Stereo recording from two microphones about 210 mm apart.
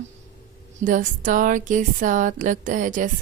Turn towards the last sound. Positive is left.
turn(degrees=-40)  # may be behind; listen again after turning